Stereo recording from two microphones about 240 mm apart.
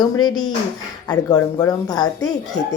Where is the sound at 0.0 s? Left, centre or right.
Centre.